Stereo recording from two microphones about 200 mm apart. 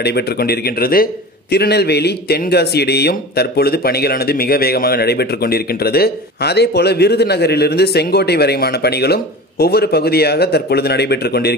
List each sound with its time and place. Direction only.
0.0 s a man's voice: 55° left (ahead or behind)